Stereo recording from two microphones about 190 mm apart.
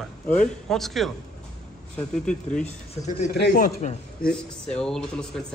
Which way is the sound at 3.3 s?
55° left (ahead or behind).